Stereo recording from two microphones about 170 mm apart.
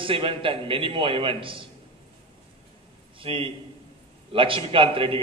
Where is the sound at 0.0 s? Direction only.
30° right (ahead or behind).